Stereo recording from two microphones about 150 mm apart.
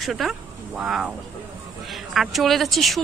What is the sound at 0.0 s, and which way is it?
A woman's voice, centre (ahead or behind).